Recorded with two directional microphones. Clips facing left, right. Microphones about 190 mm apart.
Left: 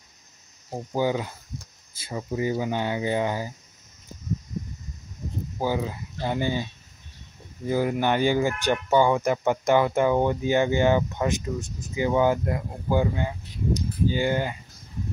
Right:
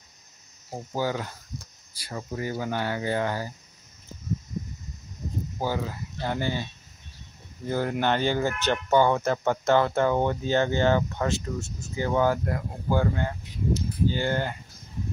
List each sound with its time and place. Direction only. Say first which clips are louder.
0.7 s speech: left 4 dB; 15° left (ahead or behind)
5.6 s speech: left 3 dB; 15° left (ahead or behind)